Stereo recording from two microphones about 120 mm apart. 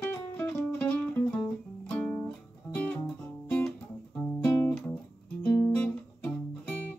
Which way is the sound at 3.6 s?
10° left (ahead or behind).